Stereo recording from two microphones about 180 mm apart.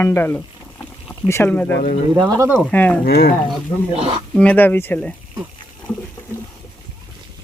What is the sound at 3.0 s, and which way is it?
Speech, 55° left (ahead or behind).